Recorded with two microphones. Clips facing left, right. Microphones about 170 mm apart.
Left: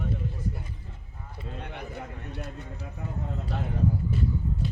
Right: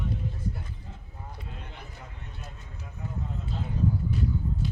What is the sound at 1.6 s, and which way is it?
A man's voice, 65° left (ahead or behind).